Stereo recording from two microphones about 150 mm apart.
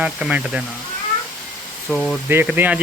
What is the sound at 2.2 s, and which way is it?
Speech, 15° right (ahead or behind).